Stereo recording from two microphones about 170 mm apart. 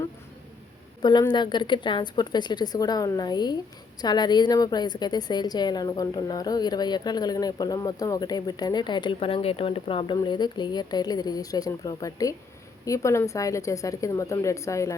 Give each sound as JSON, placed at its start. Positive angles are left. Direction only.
{"t": 1.3, "sound": "a woman's voice", "side_deg": 25}